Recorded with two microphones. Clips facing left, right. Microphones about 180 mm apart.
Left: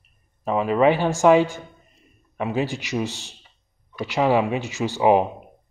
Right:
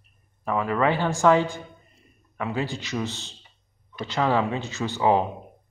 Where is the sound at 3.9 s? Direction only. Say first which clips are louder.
Left 4 dB; 15° left (ahead or behind).